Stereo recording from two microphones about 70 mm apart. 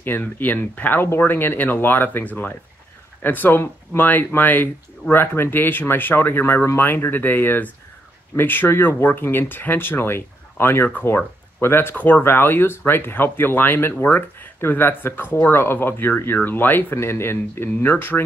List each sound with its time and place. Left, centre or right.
0.0 s speech: left